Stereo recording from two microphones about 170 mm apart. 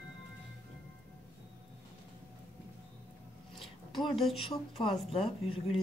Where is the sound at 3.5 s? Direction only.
Centre (ahead or behind).